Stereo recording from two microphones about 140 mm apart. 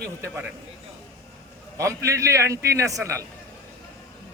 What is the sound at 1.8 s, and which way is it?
A man's voice, 20° right (ahead or behind).